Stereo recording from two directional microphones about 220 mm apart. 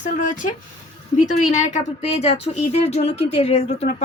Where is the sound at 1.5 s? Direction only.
30° left (ahead or behind).